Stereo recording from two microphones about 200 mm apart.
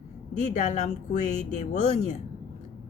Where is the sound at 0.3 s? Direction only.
35° left (ahead or behind).